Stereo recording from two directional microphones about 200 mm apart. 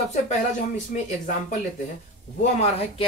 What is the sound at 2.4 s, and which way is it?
Speech, 30° left (ahead or behind).